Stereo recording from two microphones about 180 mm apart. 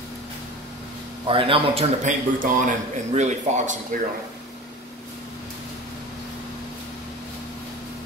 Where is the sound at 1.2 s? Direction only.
30° right (ahead or behind).